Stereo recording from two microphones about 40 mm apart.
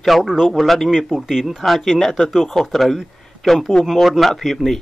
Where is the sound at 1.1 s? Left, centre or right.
Centre.